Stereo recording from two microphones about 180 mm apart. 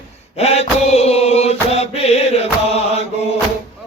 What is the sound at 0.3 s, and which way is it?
Mantra, 35° left (ahead or behind).